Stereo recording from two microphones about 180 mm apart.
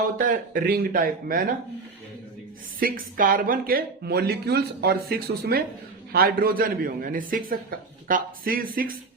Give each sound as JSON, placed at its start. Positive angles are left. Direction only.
{"t": 0.2, "sound": "a man's voice", "side_deg": -50}
{"t": 2.8, "sound": "a man's voice", "side_deg": -50}